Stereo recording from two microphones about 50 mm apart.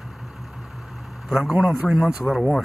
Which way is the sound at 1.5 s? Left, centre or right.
Right.